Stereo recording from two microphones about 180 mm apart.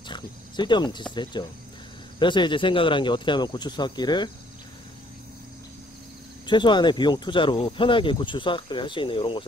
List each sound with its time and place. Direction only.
0.1 s a sound: 25° left (ahead or behind)
1.1 s speech: 25° left (ahead or behind)
6.4 s speech: 25° left (ahead or behind)